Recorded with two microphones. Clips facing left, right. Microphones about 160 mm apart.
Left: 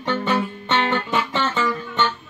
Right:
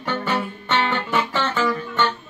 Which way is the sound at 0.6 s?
20° left (ahead or behind).